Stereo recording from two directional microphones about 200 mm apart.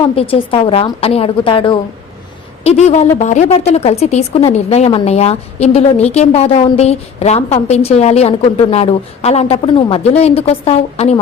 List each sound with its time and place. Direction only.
0.0 s a woman's voice: 25° left (ahead or behind)